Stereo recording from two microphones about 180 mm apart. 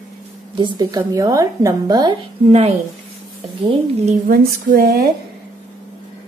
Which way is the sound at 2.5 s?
35° right (ahead or behind).